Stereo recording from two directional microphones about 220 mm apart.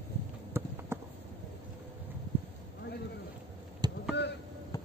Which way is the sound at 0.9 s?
10° right (ahead or behind).